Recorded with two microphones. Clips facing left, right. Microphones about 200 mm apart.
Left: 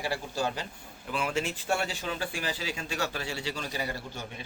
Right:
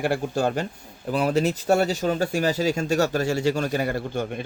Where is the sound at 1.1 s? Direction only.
40° right (ahead or behind).